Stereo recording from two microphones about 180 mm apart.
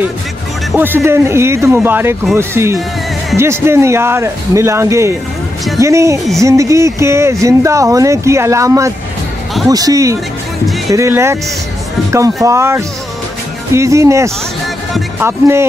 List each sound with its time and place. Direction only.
0.7 s speech: 10° right (ahead or behind)
12.4 s speech: 15° right (ahead or behind)